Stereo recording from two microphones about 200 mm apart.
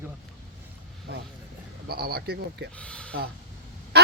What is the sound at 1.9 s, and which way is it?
Speech, 50° right (ahead or behind).